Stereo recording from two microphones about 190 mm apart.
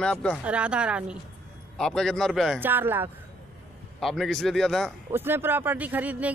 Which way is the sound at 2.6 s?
10° right (ahead or behind).